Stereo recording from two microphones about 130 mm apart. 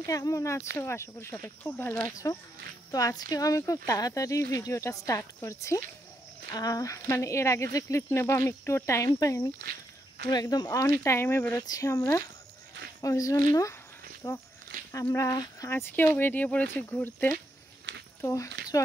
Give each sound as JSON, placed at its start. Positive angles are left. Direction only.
{"t": 0.0, "sound": "speech", "side_deg": 25}
{"t": 2.9, "sound": "speech", "side_deg": 30}
{"t": 13.0, "sound": "speech", "side_deg": 25}